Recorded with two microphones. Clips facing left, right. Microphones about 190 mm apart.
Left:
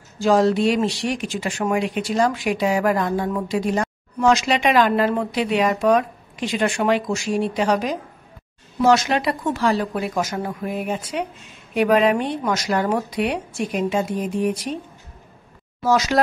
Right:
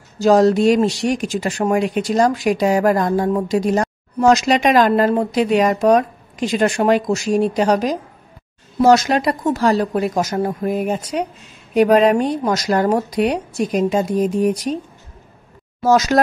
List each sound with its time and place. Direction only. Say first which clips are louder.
0.2 s speech: right 4 dB; 40° right (ahead or behind)
15.8 s speech: right 4 dB; 45° right (ahead or behind)